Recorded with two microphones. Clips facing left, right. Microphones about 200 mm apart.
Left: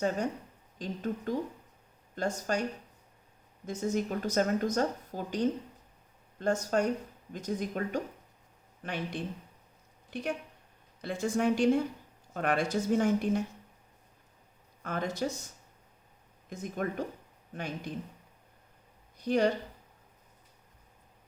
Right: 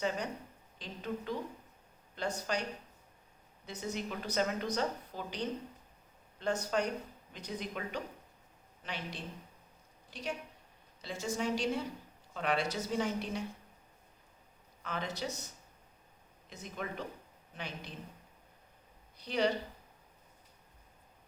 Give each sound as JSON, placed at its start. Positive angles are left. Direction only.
{"t": 0.8, "sound": "speech", "side_deg": 45}
{"t": 3.7, "sound": "a woman's voice", "side_deg": 45}
{"t": 14.8, "sound": "speech", "side_deg": 50}
{"t": 16.5, "sound": "speech", "side_deg": 50}
{"t": 19.2, "sound": "speech", "side_deg": 50}